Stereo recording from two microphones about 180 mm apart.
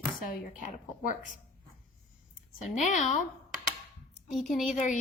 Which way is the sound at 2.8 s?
40° left (ahead or behind).